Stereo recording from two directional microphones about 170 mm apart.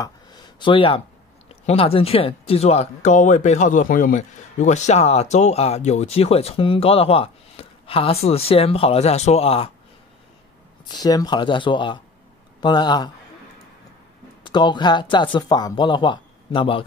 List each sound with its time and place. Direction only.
0.0 s a sound: 25° left (ahead or behind)
1.7 s speech: 35° left (ahead or behind)
10.9 s speech: 20° left (ahead or behind)
14.4 s speech: 25° left (ahead or behind)